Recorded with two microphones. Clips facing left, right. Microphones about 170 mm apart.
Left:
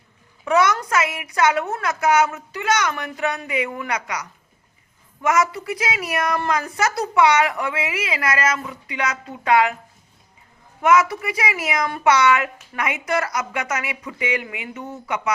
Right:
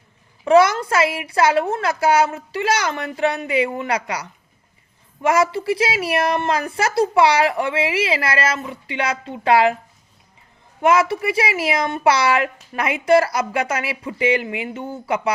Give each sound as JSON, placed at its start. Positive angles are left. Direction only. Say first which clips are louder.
{"t": 0.4, "sound": "a woman's voice", "louder": "right 5 dB", "side_deg": -30}
{"t": 10.8, "sound": "a woman's voice", "louder": "right 1 dB", "side_deg": -30}